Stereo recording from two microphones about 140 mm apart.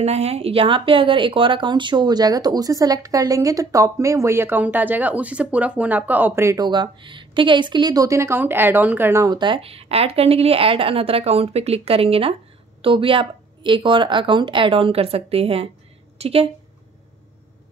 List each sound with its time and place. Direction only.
0.0 s speech: 50° right (ahead or behind); by 9.3 s 15° right (ahead or behind)
9.3 s speech: 35° right (ahead or behind)